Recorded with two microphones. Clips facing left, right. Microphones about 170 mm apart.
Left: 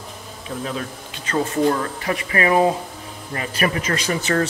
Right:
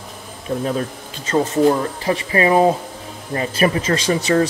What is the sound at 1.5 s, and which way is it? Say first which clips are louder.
A man's voice: right 4 dB; 20° right (ahead or behind).